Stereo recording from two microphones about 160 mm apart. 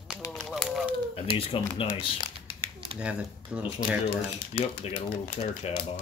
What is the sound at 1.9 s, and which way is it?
Crumpling, 35° left (ahead or behind).